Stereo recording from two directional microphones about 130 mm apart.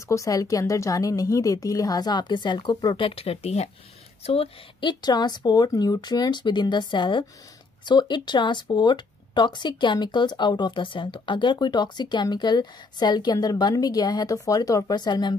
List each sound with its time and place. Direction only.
0.1 s a woman's voice: 25° left (ahead or behind)